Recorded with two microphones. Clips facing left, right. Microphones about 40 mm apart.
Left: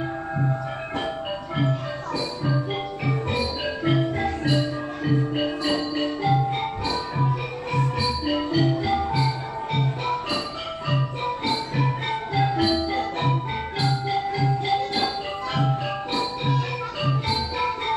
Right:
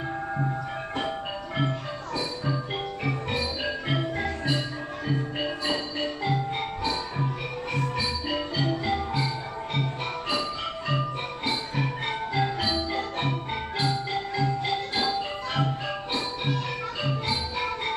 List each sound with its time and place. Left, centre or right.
0.4 s music: centre
3.1 s music: centre